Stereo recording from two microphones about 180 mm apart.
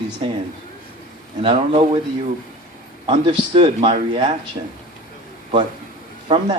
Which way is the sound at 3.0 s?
30° right (ahead or behind).